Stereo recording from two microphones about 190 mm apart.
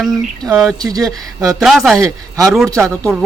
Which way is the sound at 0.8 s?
20° right (ahead or behind).